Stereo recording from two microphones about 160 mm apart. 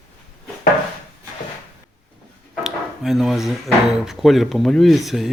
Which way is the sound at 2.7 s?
Centre (ahead or behind).